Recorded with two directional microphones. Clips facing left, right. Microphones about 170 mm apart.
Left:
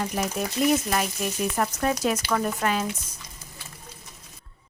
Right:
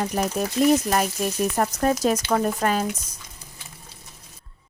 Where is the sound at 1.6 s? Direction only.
40° right (ahead or behind).